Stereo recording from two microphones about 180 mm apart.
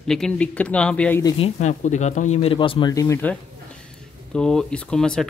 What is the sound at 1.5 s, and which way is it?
Speech, 40° left (ahead or behind).